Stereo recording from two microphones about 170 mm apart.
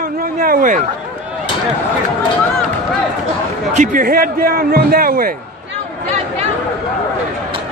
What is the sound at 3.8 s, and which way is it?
A man's voice, 55° right (ahead or behind).